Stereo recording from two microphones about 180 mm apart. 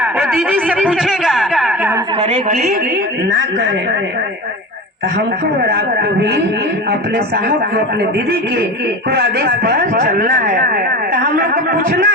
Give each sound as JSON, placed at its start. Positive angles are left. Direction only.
{"t": 0.0, "sound": "a sound", "side_deg": -5}
{"t": 5.6, "sound": "a man's voice", "side_deg": -65}
{"t": 9.1, "sound": "a man's voice", "side_deg": -60}